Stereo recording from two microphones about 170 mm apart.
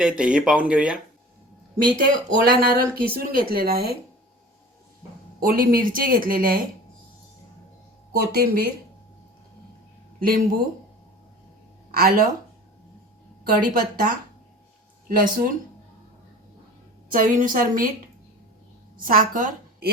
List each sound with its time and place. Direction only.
0.0 s speech: 5° right (ahead or behind)
2.3 s speech: 60° right (ahead or behind)
5.4 s speech: 60° right (ahead or behind)
8.1 s speech: 65° right (ahead or behind)
10.2 s speech: 60° right (ahead or behind)
11.9 s speech: 60° right (ahead or behind)
13.4 s speech: 60° right (ahead or behind)
17.1 s a woman's voice: 55° right (ahead or behind)
18.9 s a woman's voice: 55° right (ahead or behind)